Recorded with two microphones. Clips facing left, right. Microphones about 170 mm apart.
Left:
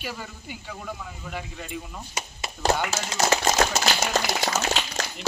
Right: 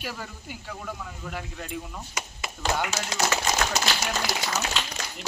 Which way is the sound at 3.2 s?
40° left (ahead or behind).